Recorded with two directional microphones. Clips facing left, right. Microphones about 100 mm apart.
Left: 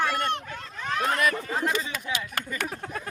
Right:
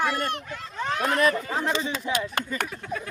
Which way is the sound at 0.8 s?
30° right (ahead or behind).